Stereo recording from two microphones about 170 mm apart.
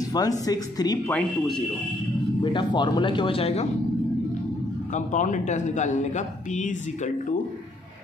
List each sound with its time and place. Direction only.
0.5 s speech: 20° left (ahead or behind)
2.4 s speech: 30° left (ahead or behind)
4.9 s speech: 45° left (ahead or behind)